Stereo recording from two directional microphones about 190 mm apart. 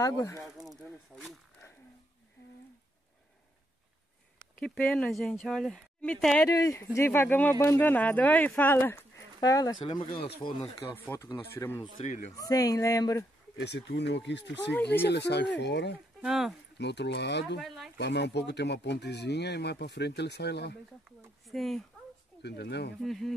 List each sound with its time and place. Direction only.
0.0 s speech: 15° left (ahead or behind)
0.6 s snake: centre (ahead or behind)
4.6 s speech: 5° left (ahead or behind); by 11.0 s 25° left (ahead or behind)
11.1 s speech: 15° left (ahead or behind)
13.6 s speech: 60° left (ahead or behind)
16.2 s speech: centre (ahead or behind)
16.7 s speech: 65° left (ahead or behind)
17.6 s speech: centre (ahead or behind)
17.9 s speech: 65° left (ahead or behind)
21.5 s speech: centre (ahead or behind)
22.4 s speech: 65° left (ahead or behind)
23.0 s speech: centre (ahead or behind)